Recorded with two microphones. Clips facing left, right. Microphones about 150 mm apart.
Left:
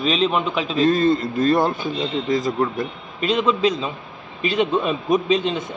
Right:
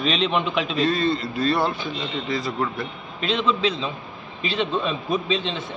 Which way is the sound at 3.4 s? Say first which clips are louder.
Left 3 dB; 10° left (ahead or behind).